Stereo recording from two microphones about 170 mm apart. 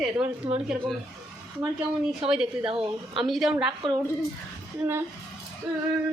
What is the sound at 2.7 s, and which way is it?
Speech, 35° right (ahead or behind).